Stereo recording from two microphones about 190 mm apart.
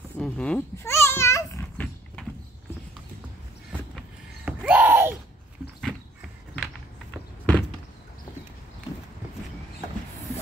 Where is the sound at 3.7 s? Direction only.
5° right (ahead or behind).